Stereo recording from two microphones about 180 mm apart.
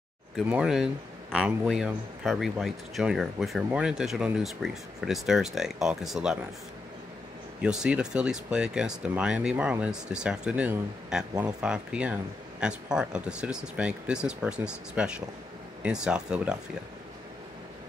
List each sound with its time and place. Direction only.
0.5 s speech: 5° right (ahead or behind)
7.6 s speech: 5° right (ahead or behind)